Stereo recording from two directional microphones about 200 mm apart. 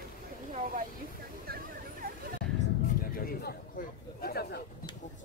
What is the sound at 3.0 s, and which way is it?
Bird, 45° left (ahead or behind).